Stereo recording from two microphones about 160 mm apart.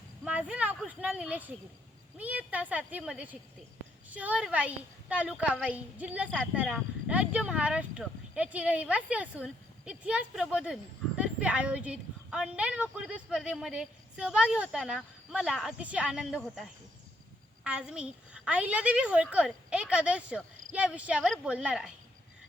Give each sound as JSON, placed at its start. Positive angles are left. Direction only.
{"t": 0.3, "sound": "a woman's voice", "side_deg": -10}